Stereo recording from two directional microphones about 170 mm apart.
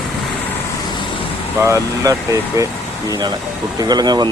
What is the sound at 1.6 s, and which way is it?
Speech, 15° right (ahead or behind).